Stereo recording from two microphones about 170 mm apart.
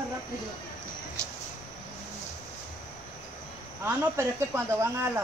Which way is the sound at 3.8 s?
15° right (ahead or behind).